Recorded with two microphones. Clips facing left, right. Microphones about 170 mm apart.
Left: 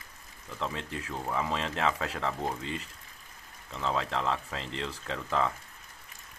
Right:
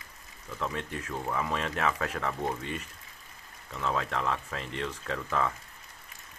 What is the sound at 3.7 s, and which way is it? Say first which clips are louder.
Speech: even; 25° left (ahead or behind).